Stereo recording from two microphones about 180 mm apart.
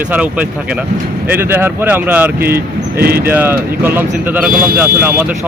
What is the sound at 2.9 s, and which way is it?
Speech, 55° right (ahead or behind).